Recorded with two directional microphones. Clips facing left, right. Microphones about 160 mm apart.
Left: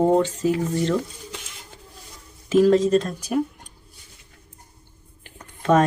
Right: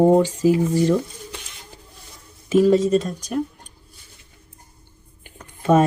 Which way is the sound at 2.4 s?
5° right (ahead or behind).